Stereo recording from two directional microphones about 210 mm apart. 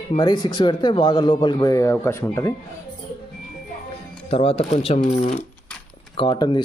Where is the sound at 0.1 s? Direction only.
20° left (ahead or behind).